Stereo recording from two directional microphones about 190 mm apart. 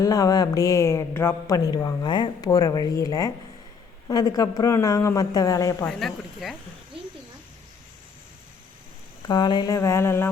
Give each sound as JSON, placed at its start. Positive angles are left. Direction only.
{"t": 0.0, "sound": "a woman's voice", "side_deg": 20}
{"t": 5.9, "sound": "speech", "side_deg": 0}
{"t": 9.2, "sound": "a woman's voice", "side_deg": 25}